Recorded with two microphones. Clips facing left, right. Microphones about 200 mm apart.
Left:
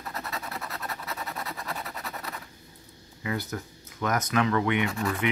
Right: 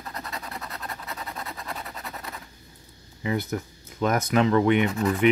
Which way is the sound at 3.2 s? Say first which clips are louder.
Right 5 dB; 25° right (ahead or behind).